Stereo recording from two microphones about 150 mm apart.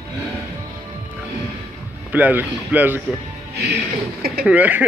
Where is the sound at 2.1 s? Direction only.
10° right (ahead or behind).